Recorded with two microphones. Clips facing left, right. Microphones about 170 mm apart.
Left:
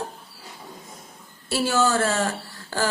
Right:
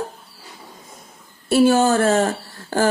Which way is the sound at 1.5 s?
50° right (ahead or behind).